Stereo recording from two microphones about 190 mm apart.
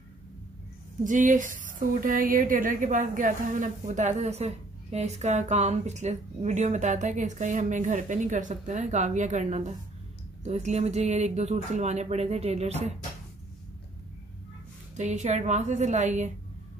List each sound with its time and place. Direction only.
1.0 s a woman's voice: 45° right (ahead or behind)
15.0 s a woman's voice: 40° right (ahead or behind)